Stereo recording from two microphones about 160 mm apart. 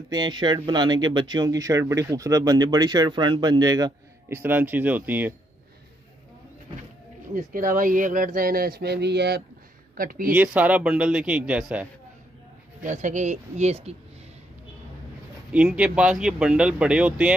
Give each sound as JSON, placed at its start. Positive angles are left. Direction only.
{"t": 0.1, "sound": "speech", "side_deg": -25}
{"t": 4.3, "sound": "speech", "side_deg": -10}
{"t": 7.3, "sound": "speech", "side_deg": -60}
{"t": 9.9, "sound": "speech", "side_deg": -60}
{"t": 10.3, "sound": "speech", "side_deg": -10}
{"t": 12.8, "sound": "speech", "side_deg": -50}
{"t": 15.5, "sound": "speech", "side_deg": -5}